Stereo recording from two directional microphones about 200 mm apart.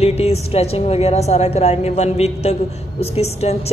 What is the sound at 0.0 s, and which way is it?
A woman's voice, 30° left (ahead or behind).